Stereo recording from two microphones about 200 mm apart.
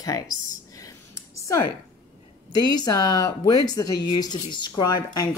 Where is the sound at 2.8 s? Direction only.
20° left (ahead or behind).